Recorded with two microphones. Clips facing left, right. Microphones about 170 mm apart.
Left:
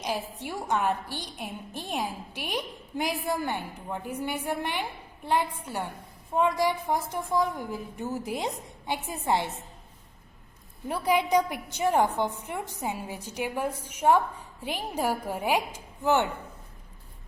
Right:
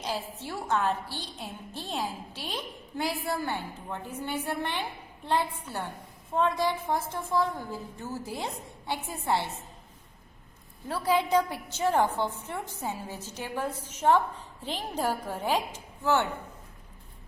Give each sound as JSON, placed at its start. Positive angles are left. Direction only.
{"t": 0.0, "sound": "a woman's voice", "side_deg": 15}
{"t": 10.8, "sound": "a woman's voice", "side_deg": 15}